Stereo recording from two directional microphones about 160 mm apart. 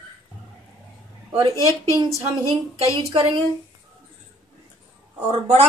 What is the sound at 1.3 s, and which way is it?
Speech, 25° right (ahead or behind).